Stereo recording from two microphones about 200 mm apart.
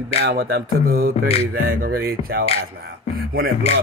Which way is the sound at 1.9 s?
50° right (ahead or behind).